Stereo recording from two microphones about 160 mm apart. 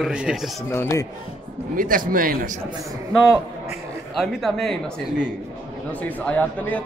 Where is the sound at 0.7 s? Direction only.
15° left (ahead or behind).